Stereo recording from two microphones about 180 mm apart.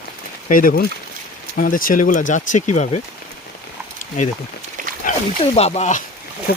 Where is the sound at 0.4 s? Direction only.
50° left (ahead or behind).